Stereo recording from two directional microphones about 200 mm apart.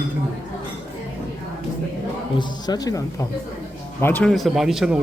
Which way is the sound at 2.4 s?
20° left (ahead or behind).